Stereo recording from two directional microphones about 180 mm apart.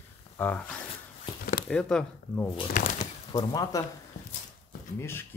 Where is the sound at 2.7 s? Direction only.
45° left (ahead or behind).